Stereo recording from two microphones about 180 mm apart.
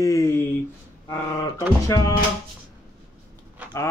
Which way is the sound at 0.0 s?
15° left (ahead or behind).